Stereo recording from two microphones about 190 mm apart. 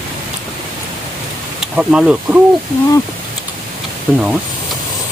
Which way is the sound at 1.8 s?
5° right (ahead or behind).